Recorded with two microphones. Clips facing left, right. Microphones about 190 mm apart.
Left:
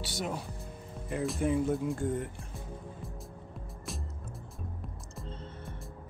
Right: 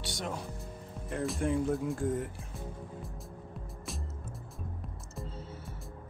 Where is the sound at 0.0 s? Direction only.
5° left (ahead or behind).